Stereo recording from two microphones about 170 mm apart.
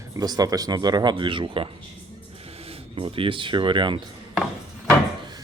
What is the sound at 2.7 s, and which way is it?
Speech, 30° right (ahead or behind).